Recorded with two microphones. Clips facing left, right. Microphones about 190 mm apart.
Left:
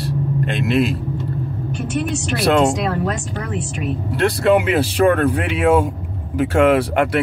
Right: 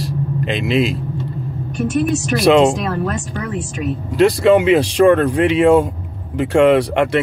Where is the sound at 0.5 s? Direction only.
90° right.